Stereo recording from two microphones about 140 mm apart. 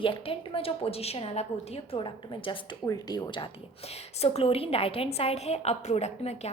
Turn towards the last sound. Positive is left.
turn(degrees=50)  # may be behind; listen again after turning